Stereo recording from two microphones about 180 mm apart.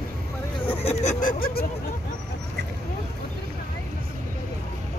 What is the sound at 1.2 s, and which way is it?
Speech, 55° left (ahead or behind).